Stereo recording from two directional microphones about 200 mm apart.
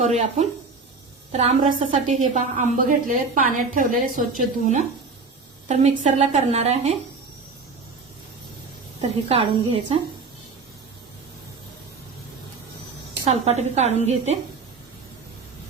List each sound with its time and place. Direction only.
0.0 s a woman's voice: 35° right (ahead or behind)
9.0 s a woman's voice: 30° right (ahead or behind)
13.2 s a woman's voice: 30° right (ahead or behind)